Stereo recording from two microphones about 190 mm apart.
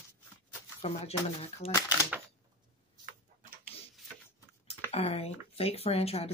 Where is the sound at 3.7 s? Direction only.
30° left (ahead or behind).